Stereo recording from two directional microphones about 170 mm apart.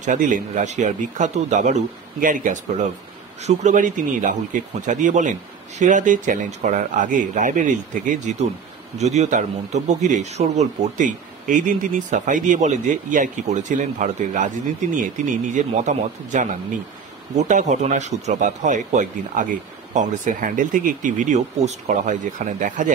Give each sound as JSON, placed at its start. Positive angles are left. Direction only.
{"t": 0.0, "sound": "speech", "side_deg": -50}
{"t": 17.5, "sound": "speech", "side_deg": -45}